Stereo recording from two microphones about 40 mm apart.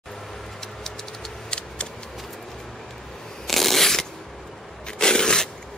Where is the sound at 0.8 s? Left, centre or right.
Centre.